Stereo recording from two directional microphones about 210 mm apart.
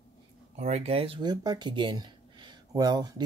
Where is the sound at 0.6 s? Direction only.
30° right (ahead or behind).